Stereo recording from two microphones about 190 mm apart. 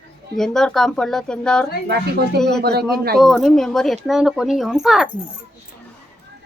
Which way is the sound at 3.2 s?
Centre (ahead or behind).